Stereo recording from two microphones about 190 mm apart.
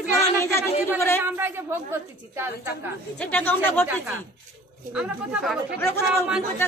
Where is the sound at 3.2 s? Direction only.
10° left (ahead or behind).